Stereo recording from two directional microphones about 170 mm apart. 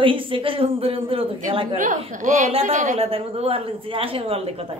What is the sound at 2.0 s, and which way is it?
A woman's voice, 50° right (ahead or behind).